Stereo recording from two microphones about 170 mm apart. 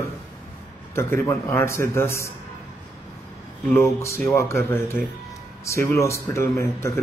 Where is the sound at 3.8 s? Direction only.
15° left (ahead or behind).